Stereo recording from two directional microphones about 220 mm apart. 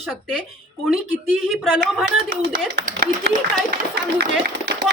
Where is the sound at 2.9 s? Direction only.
45° right (ahead or behind).